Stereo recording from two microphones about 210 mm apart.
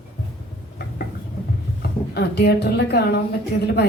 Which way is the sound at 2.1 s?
50° left (ahead or behind).